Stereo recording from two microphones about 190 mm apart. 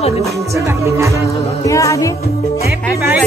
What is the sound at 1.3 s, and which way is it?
Music, 15° left (ahead or behind).